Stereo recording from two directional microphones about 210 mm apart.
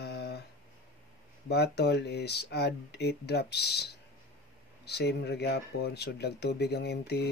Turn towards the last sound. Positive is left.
turn(degrees=50)  # may be behind; listen again after turning